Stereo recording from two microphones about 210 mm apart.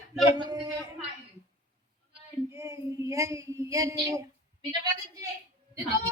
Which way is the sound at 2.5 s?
15° right (ahead or behind).